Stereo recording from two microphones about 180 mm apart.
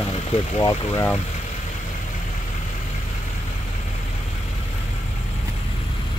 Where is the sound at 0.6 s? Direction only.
15° left (ahead or behind).